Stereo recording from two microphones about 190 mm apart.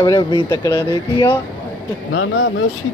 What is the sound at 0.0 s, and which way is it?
Speech, 20° left (ahead or behind).